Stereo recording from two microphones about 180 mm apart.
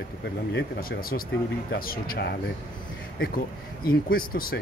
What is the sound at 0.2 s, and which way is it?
Speech, 70° left (ahead or behind).